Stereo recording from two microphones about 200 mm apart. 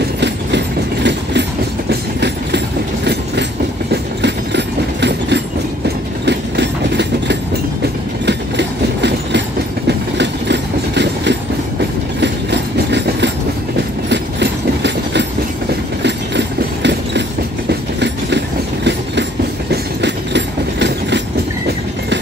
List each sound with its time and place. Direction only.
0.2 s train: 60° right (ahead or behind)
3.9 s train: 60° right (ahead or behind)
19.7 s train: 60° right (ahead or behind)